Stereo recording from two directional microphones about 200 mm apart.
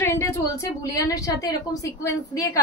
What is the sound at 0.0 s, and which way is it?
A woman's voice, 15° left (ahead or behind).